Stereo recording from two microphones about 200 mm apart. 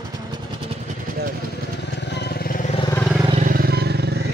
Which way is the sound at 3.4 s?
50° right (ahead or behind).